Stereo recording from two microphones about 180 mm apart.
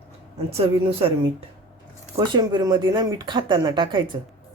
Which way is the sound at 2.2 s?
20° right (ahead or behind).